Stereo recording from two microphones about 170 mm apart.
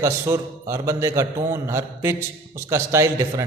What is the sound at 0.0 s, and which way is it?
A man's voice, 15° right (ahead or behind).